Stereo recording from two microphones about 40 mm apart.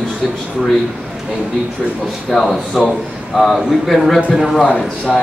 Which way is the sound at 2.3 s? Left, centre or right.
Centre.